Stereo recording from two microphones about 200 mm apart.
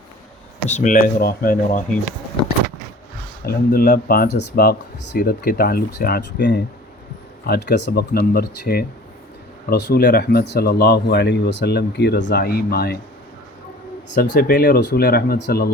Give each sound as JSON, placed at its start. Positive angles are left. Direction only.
{"t": 0.7, "sound": "speech", "side_deg": 40}
{"t": 3.4, "sound": "speech", "side_deg": 50}
{"t": 14.2, "sound": "speech", "side_deg": 50}